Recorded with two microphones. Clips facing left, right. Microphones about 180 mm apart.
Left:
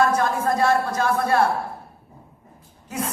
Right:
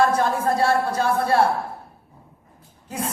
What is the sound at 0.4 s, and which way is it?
Speech, 30° right (ahead or behind).